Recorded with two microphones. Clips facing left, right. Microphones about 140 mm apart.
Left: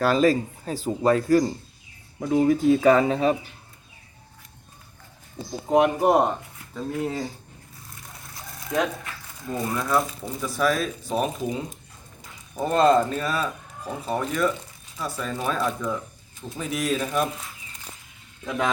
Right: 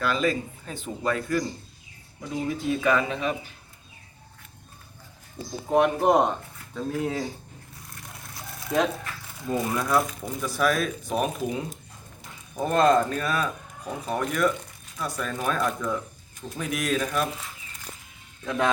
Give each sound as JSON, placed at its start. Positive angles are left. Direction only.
{"t": 0.0, "sound": "speech", "side_deg": 40}
{"t": 2.1, "sound": "speech", "side_deg": 50}
{"t": 2.8, "sound": "speech", "side_deg": 35}
{"t": 5.5, "sound": "speech", "side_deg": 15}
{"t": 5.9, "sound": "speech", "side_deg": 5}
{"t": 8.3, "sound": "a sound", "side_deg": 0}
{"t": 9.4, "sound": "speech", "side_deg": 0}
{"t": 18.4, "sound": "speech", "side_deg": 0}